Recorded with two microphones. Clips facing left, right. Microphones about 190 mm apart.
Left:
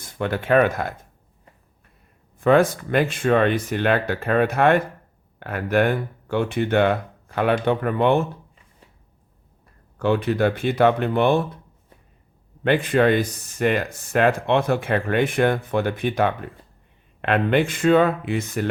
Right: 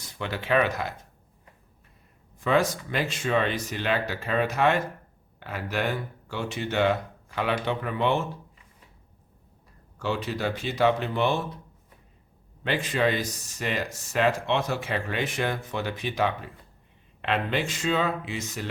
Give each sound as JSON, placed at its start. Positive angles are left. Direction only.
{"t": 0.0, "sound": "speech", "side_deg": 50}
{"t": 2.4, "sound": "speech", "side_deg": 55}
{"t": 10.0, "sound": "speech", "side_deg": 55}
{"t": 12.6, "sound": "speech", "side_deg": 55}